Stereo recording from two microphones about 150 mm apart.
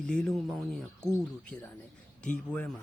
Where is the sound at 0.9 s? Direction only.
25° left (ahead or behind).